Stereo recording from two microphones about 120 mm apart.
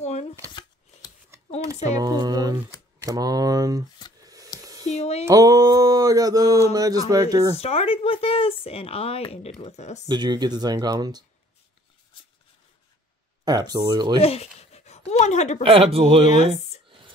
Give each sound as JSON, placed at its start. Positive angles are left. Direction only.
{"t": 0.0, "sound": "shuffling cards", "side_deg": 65}
{"t": 1.9, "sound": "speech", "side_deg": -30}
{"t": 4.2, "sound": "a sound", "side_deg": -30}
{"t": 4.8, "sound": "speech", "side_deg": 65}
{"t": 5.3, "sound": "a sound", "side_deg": -30}
{"t": 6.7, "sound": "speech", "side_deg": -30}
{"t": 7.5, "sound": "speech", "side_deg": 55}
{"t": 9.6, "sound": "speech", "side_deg": 70}
{"t": 10.0, "sound": "speech", "side_deg": -35}
{"t": 13.5, "sound": "speech", "side_deg": -35}
{"t": 14.2, "sound": "speech", "side_deg": 60}
{"t": 15.6, "sound": "speech", "side_deg": -50}
{"t": 16.3, "sound": "speech", "side_deg": 70}